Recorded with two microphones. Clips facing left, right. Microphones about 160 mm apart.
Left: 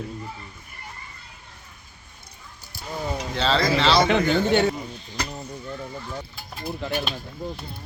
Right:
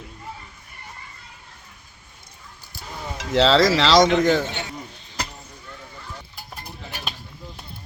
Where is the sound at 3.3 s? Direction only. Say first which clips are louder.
Right 6 dB; 85° right.